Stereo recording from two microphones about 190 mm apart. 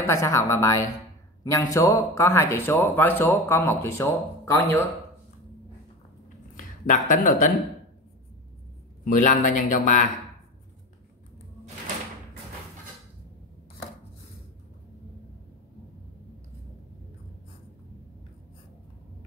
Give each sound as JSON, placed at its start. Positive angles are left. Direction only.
{"t": 0.0, "sound": "speech", "side_deg": 15}
{"t": 6.5, "sound": "speech", "side_deg": 45}
{"t": 9.0, "sound": "speech", "side_deg": 45}